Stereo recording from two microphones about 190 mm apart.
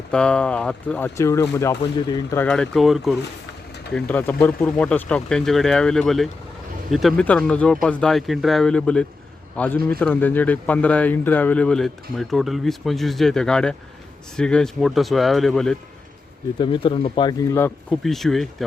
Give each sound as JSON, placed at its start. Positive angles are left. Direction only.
{"t": 0.1, "sound": "speech", "side_deg": 5}
{"t": 2.4, "sound": "speech", "side_deg": 5}
{"t": 16.6, "sound": "speech", "side_deg": 25}
{"t": 17.5, "sound": "speech", "side_deg": 10}